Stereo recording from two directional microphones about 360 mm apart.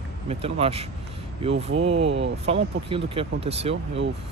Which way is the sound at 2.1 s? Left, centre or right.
Right.